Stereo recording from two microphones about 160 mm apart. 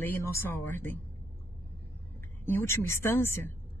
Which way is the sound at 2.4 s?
15° left (ahead or behind).